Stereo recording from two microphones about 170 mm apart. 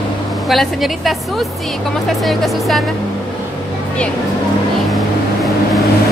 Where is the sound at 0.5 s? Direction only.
Centre (ahead or behind).